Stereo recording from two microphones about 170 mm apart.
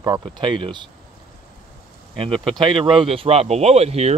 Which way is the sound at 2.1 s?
30° right (ahead or behind).